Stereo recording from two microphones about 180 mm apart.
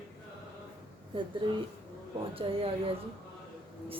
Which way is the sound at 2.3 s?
30° right (ahead or behind).